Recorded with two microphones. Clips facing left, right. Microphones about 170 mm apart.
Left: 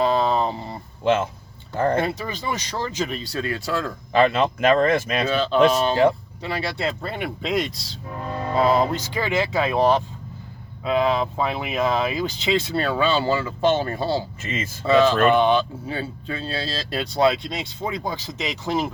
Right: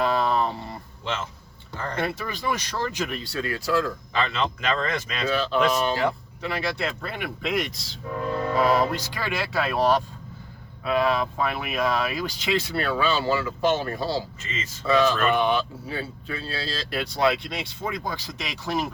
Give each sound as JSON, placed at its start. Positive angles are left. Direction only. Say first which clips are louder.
{"t": 0.0, "sound": "a sound", "louder": "left 3 dB", "side_deg": 25}
{"t": 1.0, "sound": "speech", "louder": "left 11 dB", "side_deg": 55}
{"t": 2.0, "sound": "speech", "louder": "left 1 dB", "side_deg": 20}
{"t": 4.1, "sound": "speech", "louder": "left 10 dB", "side_deg": 50}
{"t": 5.3, "sound": "speech", "louder": "left 4 dB", "side_deg": 25}
{"t": 10.8, "sound": "speech", "louder": "left 2 dB", "side_deg": 20}